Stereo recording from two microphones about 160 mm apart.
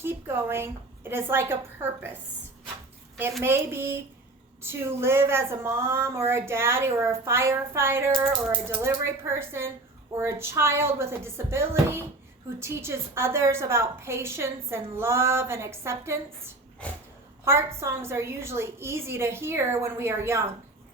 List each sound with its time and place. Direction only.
0.0 s a woman's voice: 15° right (ahead or behind)
3.4 s a woman's voice: 15° right (ahead or behind)
16.8 s speech: 5° left (ahead or behind)
17.4 s a woman's voice: 15° right (ahead or behind)